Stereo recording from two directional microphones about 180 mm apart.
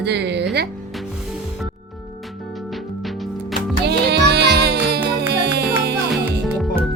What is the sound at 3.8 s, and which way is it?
Music, 65° right (ahead or behind).